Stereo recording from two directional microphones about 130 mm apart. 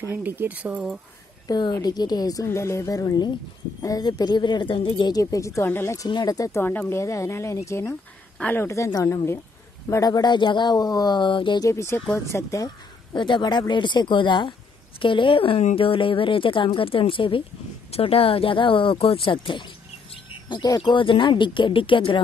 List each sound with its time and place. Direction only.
0.0 s speech: 15° right (ahead or behind)
1.5 s speech: 30° left (ahead or behind)
5.1 s speech: 25° left (ahead or behind)
6.0 s speech: 30° left (ahead or behind)
11.6 s speech: 20° left (ahead or behind); by 22.2 s 40° left (ahead or behind)